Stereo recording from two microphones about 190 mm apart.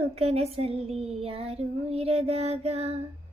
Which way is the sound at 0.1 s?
30° right (ahead or behind).